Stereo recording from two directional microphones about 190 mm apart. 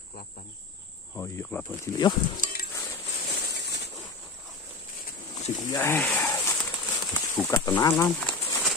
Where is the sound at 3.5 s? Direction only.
60° left (ahead or behind).